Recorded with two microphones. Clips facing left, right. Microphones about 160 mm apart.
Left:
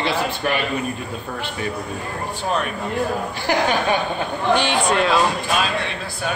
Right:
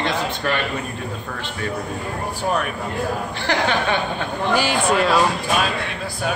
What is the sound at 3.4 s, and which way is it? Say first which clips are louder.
Speech: left 1 dB; 10° left (ahead or behind).